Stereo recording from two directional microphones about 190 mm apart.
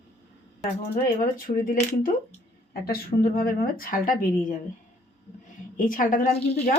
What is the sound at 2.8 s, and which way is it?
A woman's voice, 50° left (ahead or behind).